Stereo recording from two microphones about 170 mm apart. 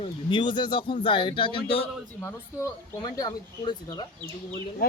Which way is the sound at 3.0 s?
25° left (ahead or behind).